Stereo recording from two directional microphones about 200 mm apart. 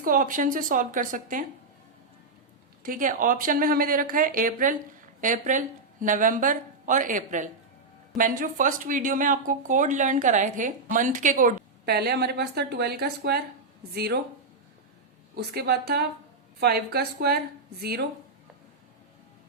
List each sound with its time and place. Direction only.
0.0 s speech: 45° right (ahead or behind)
2.8 s speech: 40° right (ahead or behind)
15.4 s speech: 55° right (ahead or behind)